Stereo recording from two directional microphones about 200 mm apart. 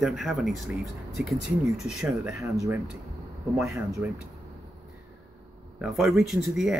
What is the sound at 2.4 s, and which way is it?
Speech, 15° right (ahead or behind).